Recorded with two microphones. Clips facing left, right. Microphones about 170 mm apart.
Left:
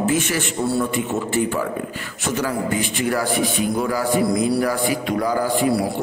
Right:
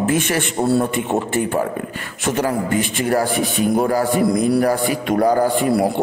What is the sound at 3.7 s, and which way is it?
Speech, 50° right (ahead or behind).